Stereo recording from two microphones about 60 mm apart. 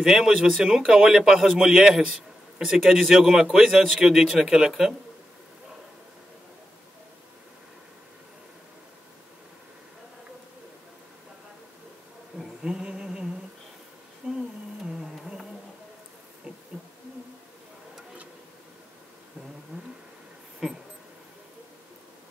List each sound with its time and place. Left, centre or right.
0.0 s a man's voice: centre
12.4 s humming: centre
14.2 s a sound: right